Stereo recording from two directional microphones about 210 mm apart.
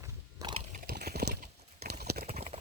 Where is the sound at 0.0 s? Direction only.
15° right (ahead or behind).